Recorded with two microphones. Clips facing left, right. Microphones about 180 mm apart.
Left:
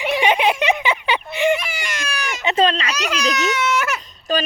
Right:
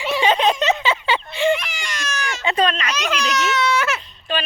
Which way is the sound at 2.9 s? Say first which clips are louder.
Right 1 dB; 10° left (ahead or behind).